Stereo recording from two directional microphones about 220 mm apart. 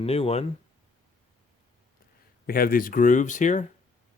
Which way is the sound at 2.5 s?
40° left (ahead or behind).